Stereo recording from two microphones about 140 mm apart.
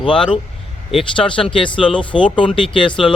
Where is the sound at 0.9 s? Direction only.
35° left (ahead or behind).